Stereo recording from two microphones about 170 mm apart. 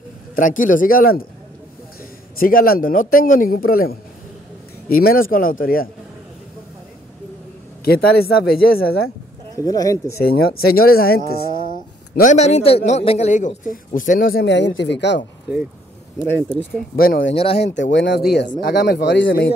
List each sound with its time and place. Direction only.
0.4 s a man's voice: 50° left (ahead or behind)
2.3 s a man's voice: 55° left (ahead or behind)
7.8 s a man's voice: 65° left (ahead or behind)
9.7 s speech: 20° left (ahead or behind)
10.2 s a man's voice: 65° left (ahead or behind)
12.2 s a man's voice: 45° left (ahead or behind)
14.4 s speech: 90° left
16.9 s a man's voice: 60° left (ahead or behind)
17.6 s speech: 90° left